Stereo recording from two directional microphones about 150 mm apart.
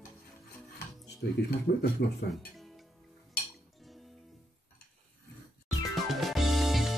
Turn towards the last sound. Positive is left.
turn(degrees=0)  # may be behind; listen again after turning